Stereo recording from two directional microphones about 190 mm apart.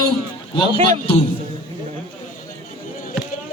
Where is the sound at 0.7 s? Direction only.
40° right (ahead or behind).